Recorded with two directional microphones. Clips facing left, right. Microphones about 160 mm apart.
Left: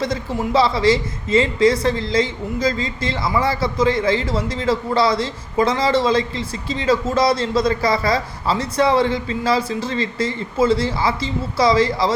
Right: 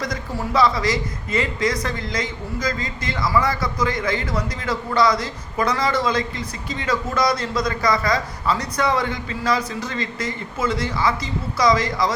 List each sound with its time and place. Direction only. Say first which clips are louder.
0.0 s a woman's voice: left 5 dB; 25° left (ahead or behind)